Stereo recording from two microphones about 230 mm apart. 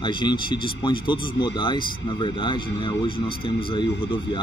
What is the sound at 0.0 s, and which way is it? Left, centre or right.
Speech, centre.